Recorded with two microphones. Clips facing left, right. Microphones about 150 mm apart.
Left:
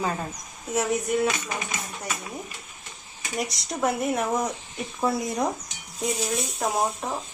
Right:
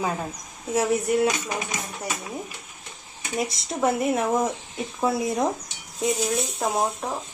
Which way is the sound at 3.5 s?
Centre (ahead or behind).